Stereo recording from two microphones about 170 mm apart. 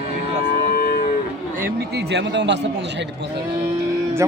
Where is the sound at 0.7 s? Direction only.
65° left (ahead or behind).